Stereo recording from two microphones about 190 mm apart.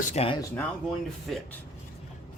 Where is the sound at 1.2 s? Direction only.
Centre (ahead or behind).